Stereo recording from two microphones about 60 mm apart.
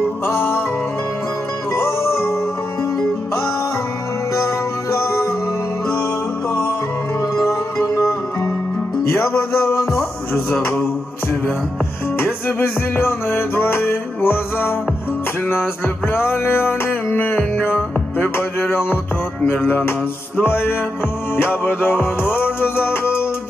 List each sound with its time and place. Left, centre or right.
0.3 s music: left
1.8 s music: left
4.9 s music: left
7.4 s music: left
9.5 s music: left
12.2 s music: left